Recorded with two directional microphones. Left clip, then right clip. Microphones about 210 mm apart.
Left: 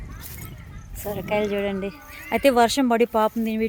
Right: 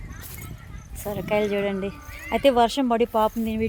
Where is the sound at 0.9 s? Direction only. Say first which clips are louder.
Even; centre (ahead or behind).